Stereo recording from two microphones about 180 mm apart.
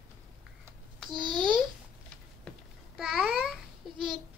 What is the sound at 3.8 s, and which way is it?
Babbling, centre (ahead or behind).